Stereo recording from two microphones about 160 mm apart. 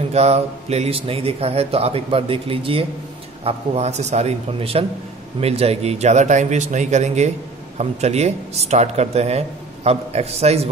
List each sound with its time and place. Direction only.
0.1 s a man's voice: 40° right (ahead or behind)